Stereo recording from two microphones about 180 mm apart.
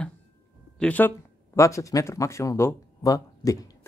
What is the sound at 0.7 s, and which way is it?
Speech, 10° left (ahead or behind).